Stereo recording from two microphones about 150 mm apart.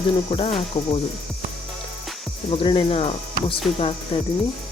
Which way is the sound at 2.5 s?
35° left (ahead or behind).